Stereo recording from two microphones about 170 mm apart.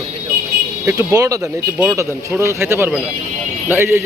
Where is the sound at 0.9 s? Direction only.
20° right (ahead or behind).